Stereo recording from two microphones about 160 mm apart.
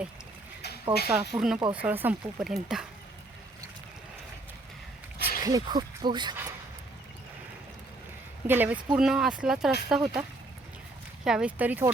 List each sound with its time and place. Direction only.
1.0 s speech: 5° right (ahead or behind)
5.4 s speech: 25° right (ahead or behind)
8.4 s speech: 10° right (ahead or behind)
11.3 s speech: 5° right (ahead or behind)